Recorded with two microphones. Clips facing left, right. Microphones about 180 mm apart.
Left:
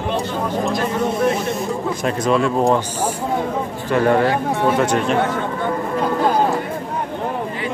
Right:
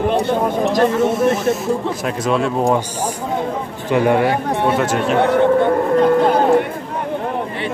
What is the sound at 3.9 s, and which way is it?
Speech, 10° right (ahead or behind).